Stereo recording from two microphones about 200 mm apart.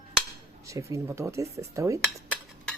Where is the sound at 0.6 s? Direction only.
15° right (ahead or behind).